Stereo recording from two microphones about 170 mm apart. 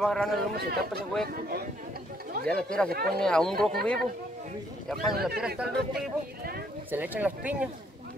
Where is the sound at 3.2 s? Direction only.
5° left (ahead or behind).